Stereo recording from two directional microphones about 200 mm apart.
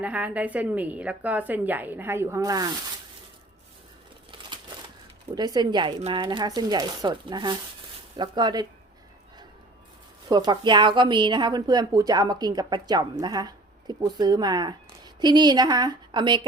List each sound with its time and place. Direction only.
0.0 s a woman's voice: 5° right (ahead or behind)
4.3 s crumpling: 25° right (ahead or behind)
5.3 s a woman's voice: 20° right (ahead or behind)
10.2 s a woman's voice: 20° right (ahead or behind)